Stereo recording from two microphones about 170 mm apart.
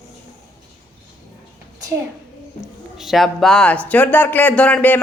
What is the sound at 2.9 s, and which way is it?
Speech, centre (ahead or behind).